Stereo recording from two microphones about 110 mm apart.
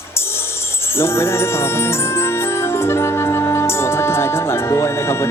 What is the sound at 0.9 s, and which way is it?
Music, 20° left (ahead or behind).